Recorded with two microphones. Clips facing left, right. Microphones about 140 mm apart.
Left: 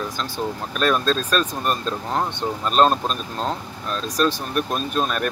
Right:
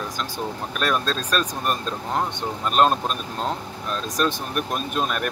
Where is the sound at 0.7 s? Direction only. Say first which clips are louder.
Left 4 dB; 10° right (ahead or behind).